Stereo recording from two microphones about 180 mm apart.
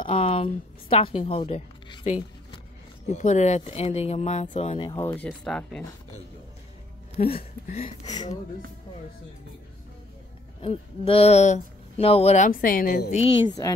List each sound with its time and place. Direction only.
0.0 s a woman's voice: 30° left (ahead or behind)
4.9 s speech: 10° left (ahead or behind)
7.2 s a woman's voice: 45° left (ahead or behind)
10.6 s speech: 30° left (ahead or behind)
12.4 s a woman's voice: 50° left (ahead or behind)
13.6 s speech: 20° left (ahead or behind)